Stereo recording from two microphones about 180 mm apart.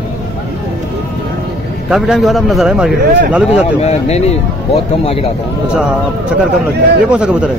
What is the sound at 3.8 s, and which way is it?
Speech, 35° left (ahead or behind).